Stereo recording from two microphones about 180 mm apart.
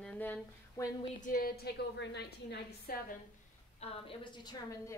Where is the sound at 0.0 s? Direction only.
5° left (ahead or behind).